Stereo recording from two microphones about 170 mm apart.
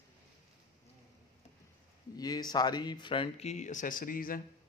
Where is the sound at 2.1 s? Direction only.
25° left (ahead or behind); by 4.4 s 55° left (ahead or behind).